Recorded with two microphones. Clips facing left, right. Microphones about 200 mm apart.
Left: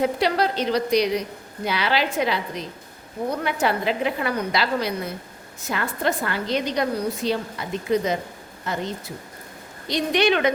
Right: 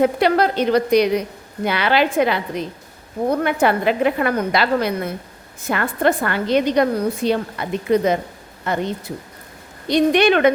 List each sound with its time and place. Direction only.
0.0 s a woman's voice: 55° right (ahead or behind)
9.9 s a woman's voice: 55° right (ahead or behind)